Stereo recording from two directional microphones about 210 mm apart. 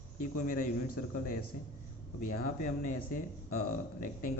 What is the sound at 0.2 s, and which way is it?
Speech, 40° left (ahead or behind).